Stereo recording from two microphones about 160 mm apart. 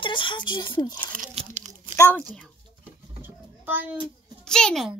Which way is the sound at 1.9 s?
15° left (ahead or behind).